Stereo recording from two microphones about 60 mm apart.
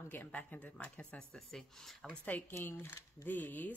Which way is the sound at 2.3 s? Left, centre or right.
Left.